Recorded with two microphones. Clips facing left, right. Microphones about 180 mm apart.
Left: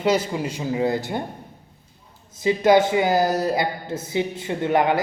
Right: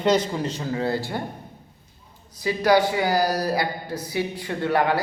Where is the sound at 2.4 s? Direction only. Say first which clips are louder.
Left 3 dB; 20° left (ahead or behind).